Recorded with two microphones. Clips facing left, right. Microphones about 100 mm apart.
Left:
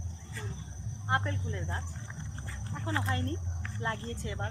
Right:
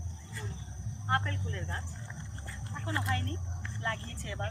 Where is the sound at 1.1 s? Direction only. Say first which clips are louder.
Left 1 dB; 15° left (ahead or behind).